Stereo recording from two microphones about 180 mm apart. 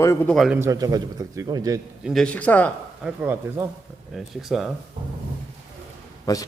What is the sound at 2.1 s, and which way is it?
Speech, 5° left (ahead or behind).